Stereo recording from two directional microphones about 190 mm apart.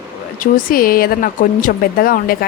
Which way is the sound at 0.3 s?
45° left (ahead or behind).